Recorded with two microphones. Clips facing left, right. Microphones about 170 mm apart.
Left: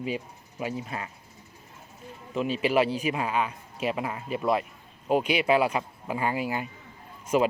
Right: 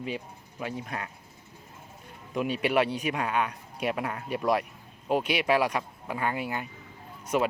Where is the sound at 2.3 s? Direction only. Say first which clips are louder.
Left 1 dB; centre (ahead or behind).